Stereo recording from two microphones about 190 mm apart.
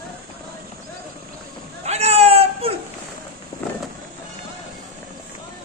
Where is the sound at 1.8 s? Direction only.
35° right (ahead or behind).